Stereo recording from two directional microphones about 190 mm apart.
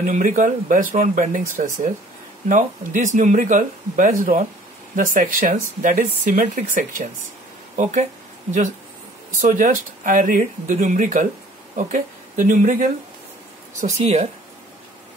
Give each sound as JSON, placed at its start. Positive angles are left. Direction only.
{"t": 0.0, "sound": "speech", "side_deg": -45}